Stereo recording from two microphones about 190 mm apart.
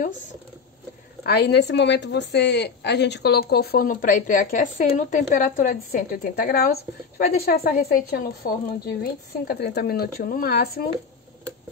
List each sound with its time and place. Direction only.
1.2 s a woman's voice: 60° left (ahead or behind)